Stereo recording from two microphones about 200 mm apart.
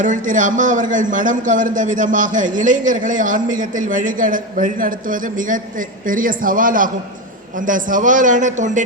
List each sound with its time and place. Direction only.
0.0 s a man's voice: 40° right (ahead or behind)